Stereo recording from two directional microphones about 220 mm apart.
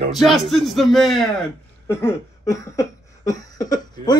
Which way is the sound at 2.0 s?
15° left (ahead or behind).